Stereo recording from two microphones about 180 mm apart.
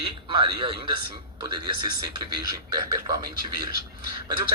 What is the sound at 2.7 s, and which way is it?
Speech, 20° right (ahead or behind).